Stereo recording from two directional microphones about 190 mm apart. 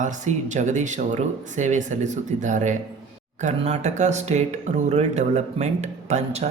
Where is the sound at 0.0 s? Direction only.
40° right (ahead or behind).